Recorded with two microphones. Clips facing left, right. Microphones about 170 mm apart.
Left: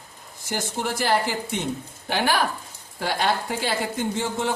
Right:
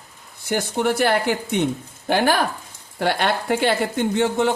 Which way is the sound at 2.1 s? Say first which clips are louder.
Right 5 dB; 50° right (ahead or behind).